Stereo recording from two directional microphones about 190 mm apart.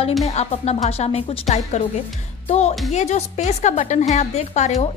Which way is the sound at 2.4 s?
35° left (ahead or behind).